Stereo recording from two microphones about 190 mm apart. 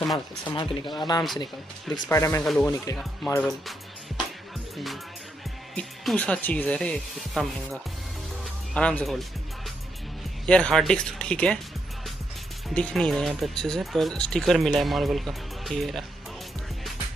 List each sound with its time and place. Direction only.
0.5 s speech: 25° left (ahead or behind)
2.4 s speech: centre (ahead or behind)
2.7 s speech: 15° left (ahead or behind)
3.3 s speech: 5° left (ahead or behind)
5.8 s speech: 5° left (ahead or behind)
10.4 s speech: 5° left (ahead or behind)
12.6 s speech: 5° left (ahead or behind)